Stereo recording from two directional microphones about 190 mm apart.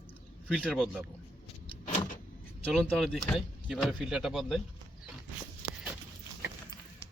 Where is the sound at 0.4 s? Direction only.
Centre (ahead or behind).